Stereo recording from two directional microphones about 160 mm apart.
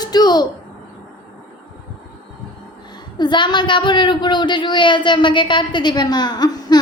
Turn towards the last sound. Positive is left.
turn(degrees=25)  # may be behind; listen again after turning